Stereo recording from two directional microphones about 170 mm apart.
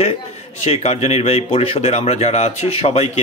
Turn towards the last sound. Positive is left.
turn(degrees=35)  # may be behind; listen again after turning